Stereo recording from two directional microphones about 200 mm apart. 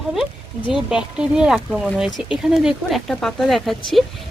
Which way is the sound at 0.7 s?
5° right (ahead or behind).